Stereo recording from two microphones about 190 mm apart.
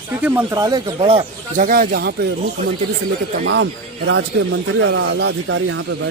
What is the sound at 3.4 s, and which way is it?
Speech, 70° right (ahead or behind).